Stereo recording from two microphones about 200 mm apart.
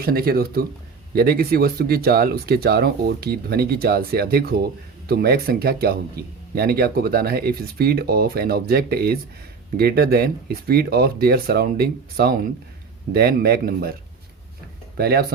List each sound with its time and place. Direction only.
0.0 s speech: 50° right (ahead or behind)
14.9 s speech: 50° right (ahead or behind)